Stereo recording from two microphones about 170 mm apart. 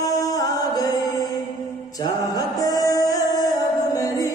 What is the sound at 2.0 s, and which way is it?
Mantra, 20° left (ahead or behind).